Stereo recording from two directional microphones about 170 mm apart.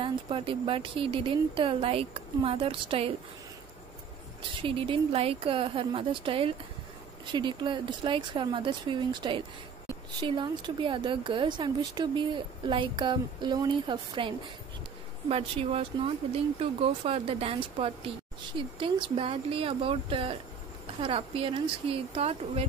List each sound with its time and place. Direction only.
0.0 s speech: 30° right (ahead or behind)
4.6 s speech: 30° right (ahead or behind)